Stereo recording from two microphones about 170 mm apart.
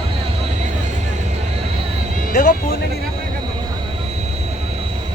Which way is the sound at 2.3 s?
50° left (ahead or behind).